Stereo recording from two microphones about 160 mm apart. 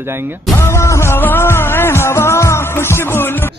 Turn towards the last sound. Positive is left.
turn(degrees=15)  # may be behind; listen again after turning